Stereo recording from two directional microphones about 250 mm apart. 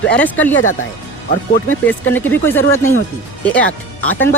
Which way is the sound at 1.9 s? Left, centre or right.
Centre.